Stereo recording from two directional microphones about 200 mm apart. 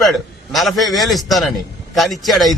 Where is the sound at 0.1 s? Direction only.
Centre (ahead or behind).